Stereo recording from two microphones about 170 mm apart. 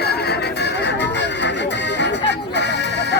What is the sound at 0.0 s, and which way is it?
Music, 70° left (ahead or behind).